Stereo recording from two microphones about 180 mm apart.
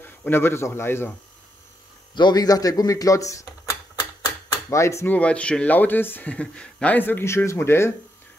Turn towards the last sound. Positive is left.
turn(degrees=15)  # may be behind; listen again after turning